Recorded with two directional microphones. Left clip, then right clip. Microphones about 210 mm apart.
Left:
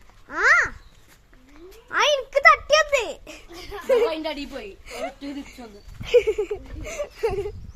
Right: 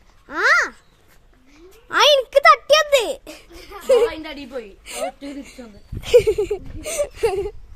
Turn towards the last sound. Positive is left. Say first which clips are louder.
# right 5 dB
turn(degrees=-45)  # may be behind; listen again after turning